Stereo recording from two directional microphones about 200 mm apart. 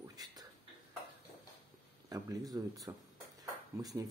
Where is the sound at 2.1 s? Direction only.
20° right (ahead or behind).